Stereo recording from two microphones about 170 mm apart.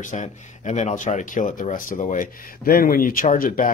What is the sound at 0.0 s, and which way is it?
Speech, 45° left (ahead or behind).